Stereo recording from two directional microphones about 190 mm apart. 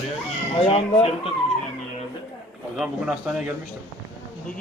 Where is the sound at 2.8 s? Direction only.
5° right (ahead or behind).